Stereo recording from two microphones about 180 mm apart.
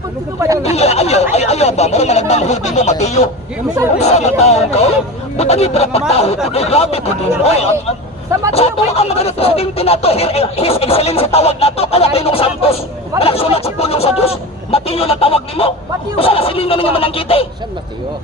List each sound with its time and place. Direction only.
0.3 s speech: 20° right (ahead or behind)
0.6 s speech: 35° left (ahead or behind)